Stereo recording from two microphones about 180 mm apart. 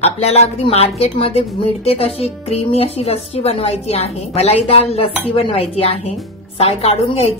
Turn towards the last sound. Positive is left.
turn(degrees=30)  # may be behind; listen again after turning